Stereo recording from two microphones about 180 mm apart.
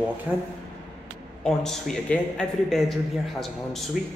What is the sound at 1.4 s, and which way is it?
A man's voice, 5° left (ahead or behind).